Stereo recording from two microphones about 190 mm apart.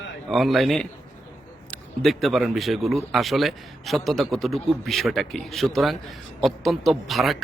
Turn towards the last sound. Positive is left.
turn(degrees=0)  # may be behind; listen again after turning